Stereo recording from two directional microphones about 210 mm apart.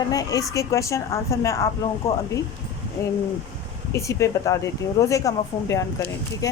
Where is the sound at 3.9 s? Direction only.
15° left (ahead or behind).